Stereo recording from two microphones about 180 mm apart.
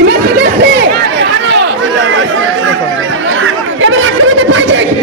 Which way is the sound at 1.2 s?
80° right.